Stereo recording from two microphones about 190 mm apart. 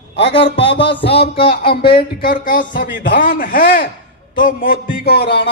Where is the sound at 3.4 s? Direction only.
45° left (ahead or behind).